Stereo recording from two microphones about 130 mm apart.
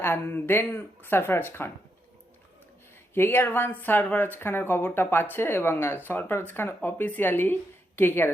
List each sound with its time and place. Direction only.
0.0 s speech: 15° left (ahead or behind)
3.2 s speech: 15° left (ahead or behind)